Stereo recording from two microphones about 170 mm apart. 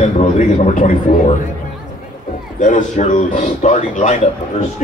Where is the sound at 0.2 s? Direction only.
50° left (ahead or behind).